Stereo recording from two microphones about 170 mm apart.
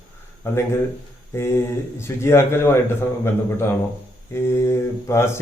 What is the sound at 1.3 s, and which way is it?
A man's voice, 15° left (ahead or behind).